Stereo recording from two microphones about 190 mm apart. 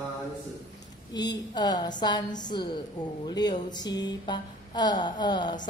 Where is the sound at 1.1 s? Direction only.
20° left (ahead or behind).